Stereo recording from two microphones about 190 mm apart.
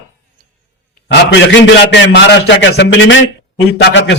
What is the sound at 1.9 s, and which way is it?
A man's voice, 70° left (ahead or behind).